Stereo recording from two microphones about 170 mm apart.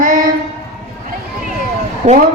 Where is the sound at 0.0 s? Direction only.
50° right (ahead or behind).